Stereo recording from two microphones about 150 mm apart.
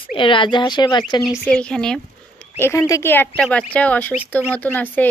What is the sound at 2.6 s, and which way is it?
A woman's voice, 20° left (ahead or behind).